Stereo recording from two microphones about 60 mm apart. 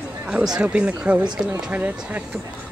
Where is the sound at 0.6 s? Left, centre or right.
Centre.